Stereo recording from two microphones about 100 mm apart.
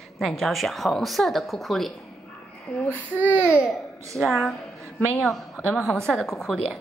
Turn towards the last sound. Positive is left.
turn(degrees=5)  # may be behind; listen again after turning